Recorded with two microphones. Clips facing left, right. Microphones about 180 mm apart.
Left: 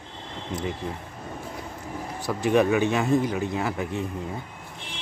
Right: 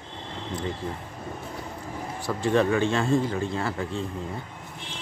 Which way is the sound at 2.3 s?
15° left (ahead or behind).